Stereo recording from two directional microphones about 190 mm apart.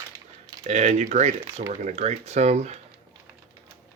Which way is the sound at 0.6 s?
35° right (ahead or behind).